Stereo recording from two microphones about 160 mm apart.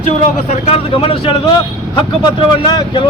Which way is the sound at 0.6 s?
40° left (ahead or behind).